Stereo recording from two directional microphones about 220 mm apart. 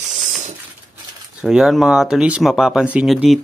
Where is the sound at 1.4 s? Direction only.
Centre (ahead or behind).